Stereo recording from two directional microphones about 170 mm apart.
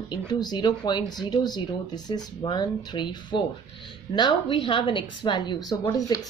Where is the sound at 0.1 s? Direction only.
25° left (ahead or behind).